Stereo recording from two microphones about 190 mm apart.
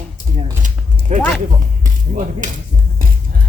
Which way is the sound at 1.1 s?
40° right (ahead or behind).